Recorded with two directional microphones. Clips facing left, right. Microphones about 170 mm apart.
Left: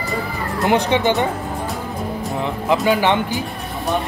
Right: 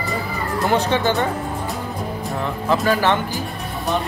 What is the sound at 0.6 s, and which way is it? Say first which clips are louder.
Speech: left 2 dB; 15° left (ahead or behind).